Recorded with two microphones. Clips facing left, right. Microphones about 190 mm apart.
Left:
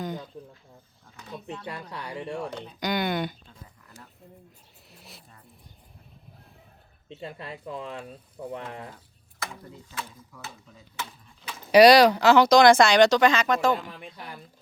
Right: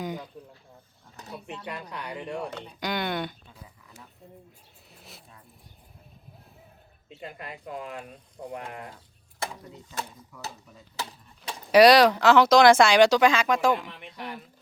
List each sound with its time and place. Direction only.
1.5 s speech: 30° left (ahead or behind)
2.6 s speech: centre (ahead or behind)
4.9 s a sound: centre (ahead or behind)
7.1 s speech: 30° left (ahead or behind)
11.0 s speech: 35° right (ahead or behind)
11.7 s speech: centre (ahead or behind)